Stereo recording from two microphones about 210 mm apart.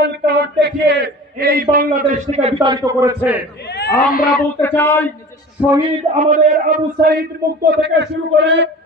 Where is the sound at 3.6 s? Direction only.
55° left (ahead or behind).